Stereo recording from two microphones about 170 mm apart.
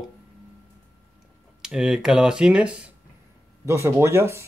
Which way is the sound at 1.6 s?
5° right (ahead or behind).